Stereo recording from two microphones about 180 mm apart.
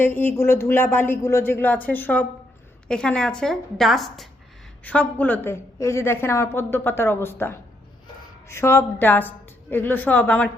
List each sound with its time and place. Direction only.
0.0 s a woman's voice: 10° left (ahead or behind)